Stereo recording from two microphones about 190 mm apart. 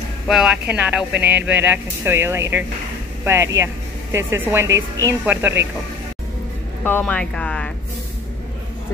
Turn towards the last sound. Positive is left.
turn(degrees=5)  # may be behind; listen again after turning